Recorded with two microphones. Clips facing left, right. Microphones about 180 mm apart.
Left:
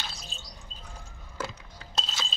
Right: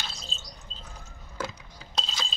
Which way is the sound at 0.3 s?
15° left (ahead or behind).